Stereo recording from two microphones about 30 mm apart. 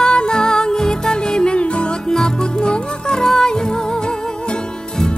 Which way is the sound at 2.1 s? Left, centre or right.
Left.